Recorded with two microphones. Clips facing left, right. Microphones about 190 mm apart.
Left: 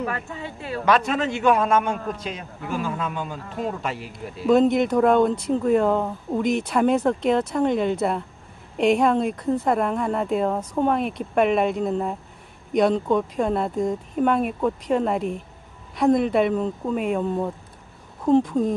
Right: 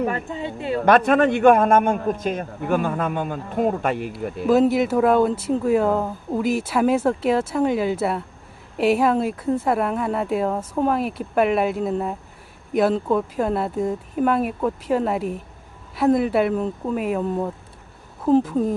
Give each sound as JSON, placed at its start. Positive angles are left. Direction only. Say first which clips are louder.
{"t": 0.0, "sound": "a woman's voice", "louder": "right 5 dB", "side_deg": -25}
{"t": 0.8, "sound": "a man's voice", "louder": "right 5 dB", "side_deg": -55}
{"t": 4.5, "sound": "speech", "louder": "even", "side_deg": -5}